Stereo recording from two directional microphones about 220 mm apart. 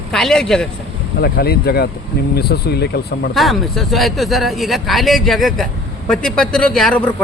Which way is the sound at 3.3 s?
Centre (ahead or behind).